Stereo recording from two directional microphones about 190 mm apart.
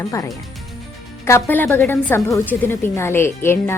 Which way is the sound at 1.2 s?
10° left (ahead or behind).